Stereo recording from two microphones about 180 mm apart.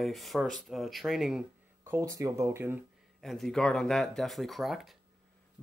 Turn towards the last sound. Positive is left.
turn(degrees=0)  # may be behind; listen again after turning